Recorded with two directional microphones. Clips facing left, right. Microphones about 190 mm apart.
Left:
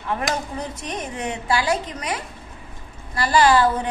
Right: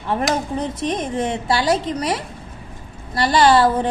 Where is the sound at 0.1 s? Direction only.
30° right (ahead or behind).